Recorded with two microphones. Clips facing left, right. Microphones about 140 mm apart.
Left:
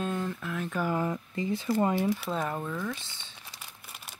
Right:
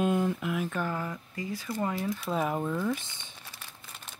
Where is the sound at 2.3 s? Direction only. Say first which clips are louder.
Right 3 dB; 10° right (ahead or behind).